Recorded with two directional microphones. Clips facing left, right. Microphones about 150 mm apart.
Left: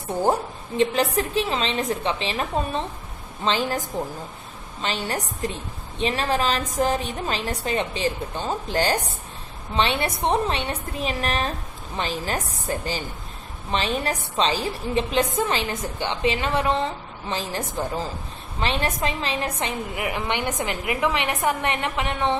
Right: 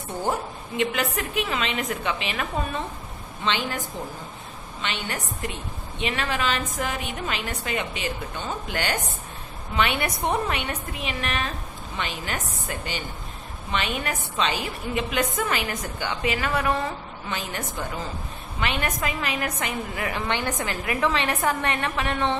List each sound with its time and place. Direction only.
0.2 s a woman's voice: 35° left (ahead or behind)
4.8 s a woman's voice: 35° left (ahead or behind)
20.1 s a woman's voice: 15° left (ahead or behind)